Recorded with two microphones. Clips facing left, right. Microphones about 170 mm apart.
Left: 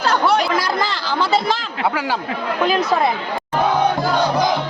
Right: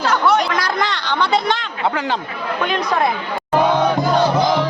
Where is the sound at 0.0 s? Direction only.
30° left (ahead or behind).